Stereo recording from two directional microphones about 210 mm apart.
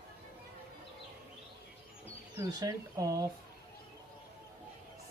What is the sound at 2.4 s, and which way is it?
Speech, 15° right (ahead or behind).